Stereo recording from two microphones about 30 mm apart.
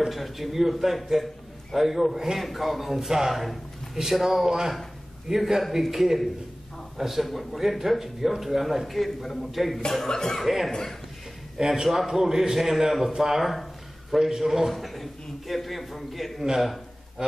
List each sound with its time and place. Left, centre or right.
0.1 s a man's voice: centre
9.8 s speech: centre
10.4 s speech: centre
10.7 s speech: centre
11.5 s a man's voice: centre
14.7 s speech: centre
17.2 s a man's voice: right